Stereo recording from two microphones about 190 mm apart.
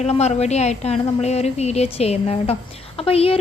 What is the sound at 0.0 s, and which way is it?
A woman's voice, 35° left (ahead or behind).